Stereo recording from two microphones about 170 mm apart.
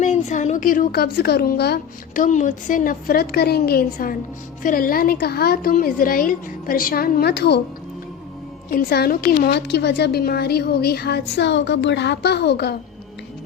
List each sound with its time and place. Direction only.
0.0 s a woman's voice: 45° left (ahead or behind); by 7.6 s 75° left (ahead or behind)
8.7 s a woman's voice: 65° left (ahead or behind)